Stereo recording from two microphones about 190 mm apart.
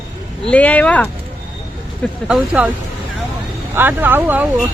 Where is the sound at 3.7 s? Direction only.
10° right (ahead or behind).